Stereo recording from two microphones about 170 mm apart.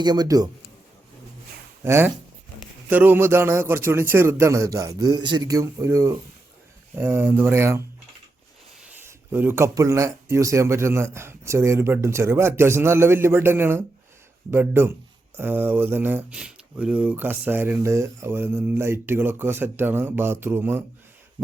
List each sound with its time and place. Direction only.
0.0 s speech: 25° right (ahead or behind)
1.8 s speech: 15° right (ahead or behind)
9.0 s speech: 10° right (ahead or behind)